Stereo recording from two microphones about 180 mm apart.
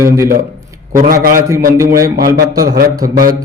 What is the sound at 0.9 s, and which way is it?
Speech, 50° right (ahead or behind).